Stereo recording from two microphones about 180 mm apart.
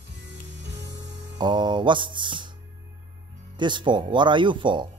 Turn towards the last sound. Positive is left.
turn(degrees=-25)  # may be behind; listen again after turning